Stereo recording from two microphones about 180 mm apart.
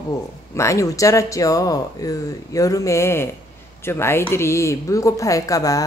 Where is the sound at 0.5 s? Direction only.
15° left (ahead or behind).